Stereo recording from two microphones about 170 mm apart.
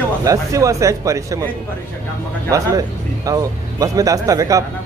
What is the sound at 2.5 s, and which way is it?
Speech, 20° right (ahead or behind).